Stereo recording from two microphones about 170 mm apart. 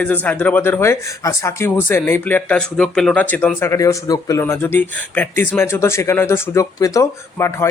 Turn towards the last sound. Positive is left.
turn(degrees=15)  # may be behind; listen again after turning